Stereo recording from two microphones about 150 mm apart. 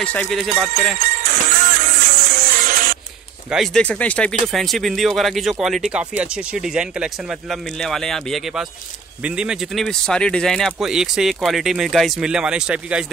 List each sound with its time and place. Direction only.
0.0 s speech: 10° left (ahead or behind)
1.2 s music: 65° right (ahead or behind)
3.4 s speech: centre (ahead or behind)